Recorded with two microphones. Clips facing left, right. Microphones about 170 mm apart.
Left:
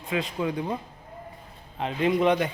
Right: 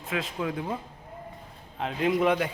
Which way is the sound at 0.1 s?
Centre (ahead or behind).